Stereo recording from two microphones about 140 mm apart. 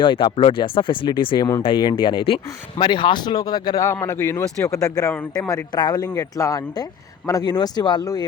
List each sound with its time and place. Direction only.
0.0 s speech: 35° left (ahead or behind)
3.8 s speech: 15° left (ahead or behind)
5.1 s a man's voice: 5° left (ahead or behind)
5.5 s speech: 25° left (ahead or behind)